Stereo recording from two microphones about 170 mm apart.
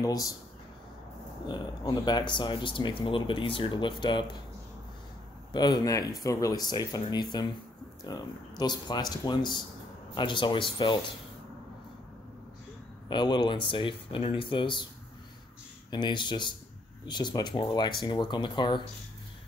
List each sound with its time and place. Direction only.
0.0 s speech: 20° left (ahead or behind)
1.5 s speech: 25° left (ahead or behind)
5.5 s speech: 25° left (ahead or behind)
13.1 s speech: 25° left (ahead or behind)
15.9 s speech: 25° left (ahead or behind)